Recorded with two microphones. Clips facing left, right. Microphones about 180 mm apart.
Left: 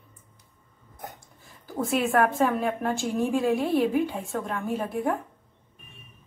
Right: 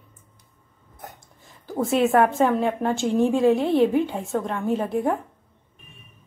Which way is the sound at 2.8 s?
25° right (ahead or behind).